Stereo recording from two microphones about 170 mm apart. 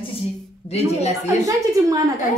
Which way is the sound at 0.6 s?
40° left (ahead or behind).